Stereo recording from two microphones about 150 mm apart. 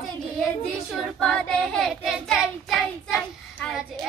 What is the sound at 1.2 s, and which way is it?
Child singing, 5° left (ahead or behind).